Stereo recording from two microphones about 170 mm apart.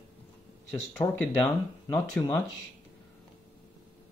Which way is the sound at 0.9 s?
15° left (ahead or behind).